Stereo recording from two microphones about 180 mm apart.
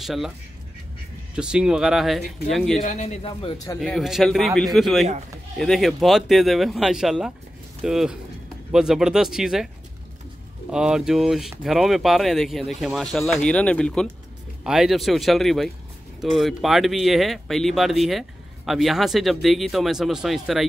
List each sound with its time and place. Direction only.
0.0 s speech: centre (ahead or behind)
1.3 s speech: 5° right (ahead or behind)
2.8 s a man's voice: 40° left (ahead or behind)
3.8 s speech: centre (ahead or behind)
10.7 s speech: 5° right (ahead or behind)